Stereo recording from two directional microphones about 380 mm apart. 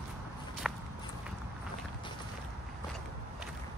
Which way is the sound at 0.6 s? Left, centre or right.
Centre.